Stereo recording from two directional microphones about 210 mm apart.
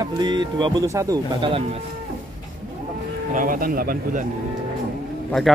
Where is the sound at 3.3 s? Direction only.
40° right (ahead or behind).